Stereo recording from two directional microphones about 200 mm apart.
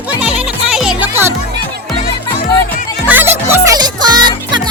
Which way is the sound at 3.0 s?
10° right (ahead or behind).